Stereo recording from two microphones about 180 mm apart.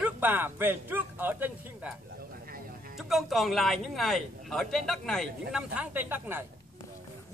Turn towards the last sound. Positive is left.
turn(degrees=-10)  # may be behind; listen again after turning